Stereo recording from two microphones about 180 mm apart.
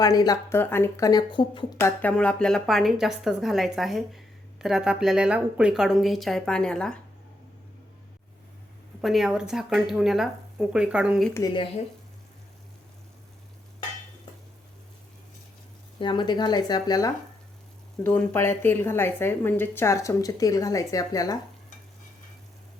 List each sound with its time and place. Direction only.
0.0 s speech: 20° left (ahead or behind)
1.8 s speech: 10° left (ahead or behind)
9.0 s speech: centre (ahead or behind)
11.3 s speech: 25° left (ahead or behind)
16.0 s speech: 25° left (ahead or behind)
18.0 s a woman's voice: 10° left (ahead or behind)